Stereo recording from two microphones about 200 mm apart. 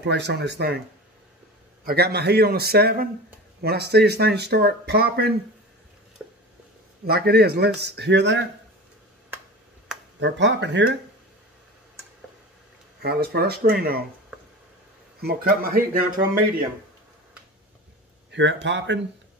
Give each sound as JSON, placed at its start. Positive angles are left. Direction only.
{"t": 0.0, "sound": "speech", "side_deg": -60}
{"t": 1.9, "sound": "speech", "side_deg": -50}
{"t": 7.1, "sound": "speech", "side_deg": -50}
{"t": 10.2, "sound": "speech", "side_deg": -60}
{"t": 13.0, "sound": "speech", "side_deg": -55}
{"t": 15.2, "sound": "speech", "side_deg": -45}
{"t": 18.3, "sound": "speech", "side_deg": -65}